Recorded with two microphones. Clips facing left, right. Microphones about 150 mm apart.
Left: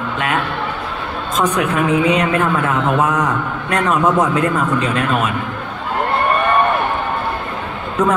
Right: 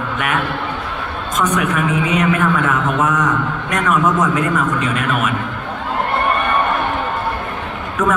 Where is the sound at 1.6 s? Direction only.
30° left (ahead or behind).